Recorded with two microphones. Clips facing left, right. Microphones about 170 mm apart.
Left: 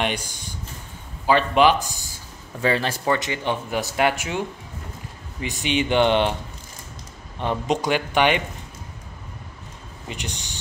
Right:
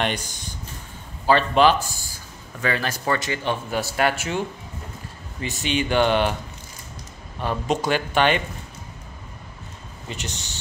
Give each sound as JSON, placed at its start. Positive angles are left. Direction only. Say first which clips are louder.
{"t": 0.0, "sound": "speech", "louder": "even", "side_deg": 10}
{"t": 2.6, "sound": "speech", "louder": "left 3 dB", "side_deg": 25}
{"t": 5.4, "sound": "speech", "louder": "left 1 dB", "side_deg": 15}
{"t": 7.3, "sound": "speech", "louder": "left 1 dB", "side_deg": 20}
{"t": 10.0, "sound": "speech", "louder": "even", "side_deg": 15}